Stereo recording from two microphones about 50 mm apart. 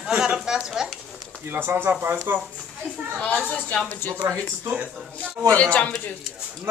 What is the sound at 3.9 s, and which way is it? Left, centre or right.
Speech, left.